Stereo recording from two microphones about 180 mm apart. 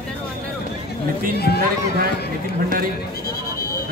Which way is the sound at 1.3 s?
65° left (ahead or behind).